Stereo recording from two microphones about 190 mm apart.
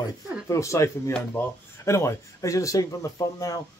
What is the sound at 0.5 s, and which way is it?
Speech, 15° left (ahead or behind).